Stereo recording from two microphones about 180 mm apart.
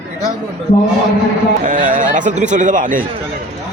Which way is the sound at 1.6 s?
45° right (ahead or behind).